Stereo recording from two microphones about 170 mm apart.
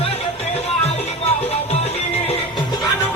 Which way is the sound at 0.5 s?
35° left (ahead or behind).